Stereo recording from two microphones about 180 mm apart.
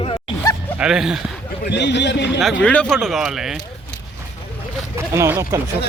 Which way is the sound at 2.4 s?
5° left (ahead or behind).